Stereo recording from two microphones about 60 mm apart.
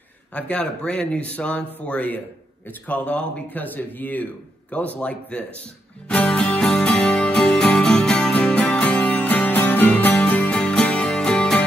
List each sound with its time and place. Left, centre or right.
0.3 s speech: centre
6.0 s music: centre
10.5 s music: centre